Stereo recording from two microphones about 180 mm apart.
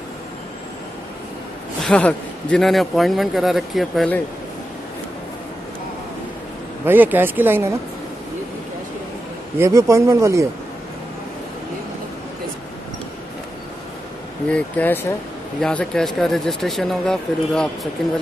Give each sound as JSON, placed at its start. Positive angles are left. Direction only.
{"t": 1.8, "sound": "a man's voice", "side_deg": 5}
{"t": 6.9, "sound": "speech", "side_deg": -10}
{"t": 9.6, "sound": "speech", "side_deg": -15}
{"t": 14.5, "sound": "a man's voice", "side_deg": 10}